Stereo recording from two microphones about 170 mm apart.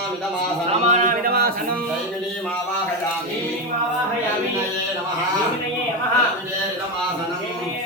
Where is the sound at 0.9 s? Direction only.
50° right (ahead or behind).